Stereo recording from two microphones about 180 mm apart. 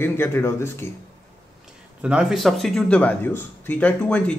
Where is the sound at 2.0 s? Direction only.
5° right (ahead or behind).